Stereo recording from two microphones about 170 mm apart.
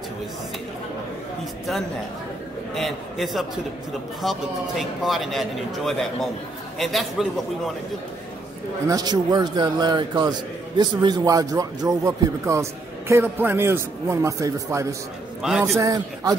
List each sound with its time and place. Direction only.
2.7 s a man's voice: centre (ahead or behind)
8.8 s a man's voice: 20° right (ahead or behind)